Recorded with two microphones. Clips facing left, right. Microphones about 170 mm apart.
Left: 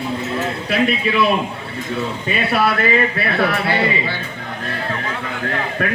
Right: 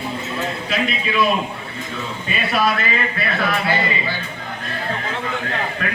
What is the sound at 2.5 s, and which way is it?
A man's voice, 65° left (ahead or behind).